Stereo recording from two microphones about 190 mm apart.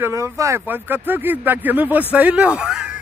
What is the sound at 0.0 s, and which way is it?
Speech, 15° right (ahead or behind).